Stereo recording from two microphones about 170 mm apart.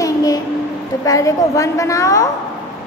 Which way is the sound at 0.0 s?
20° left (ahead or behind).